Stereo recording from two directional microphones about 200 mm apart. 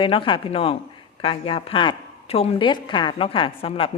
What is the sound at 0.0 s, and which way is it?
A woman's voice, 25° left (ahead or behind).